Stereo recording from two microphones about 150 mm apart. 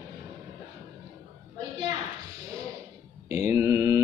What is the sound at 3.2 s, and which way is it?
Mantra, 20° right (ahead or behind).